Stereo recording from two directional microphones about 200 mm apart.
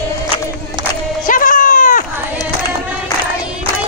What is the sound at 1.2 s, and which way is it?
Music, 40° left (ahead or behind).